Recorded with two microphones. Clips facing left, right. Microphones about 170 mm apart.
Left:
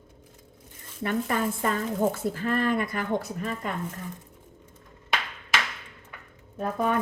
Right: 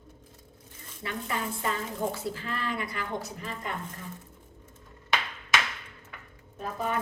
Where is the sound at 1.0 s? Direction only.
50° left (ahead or behind).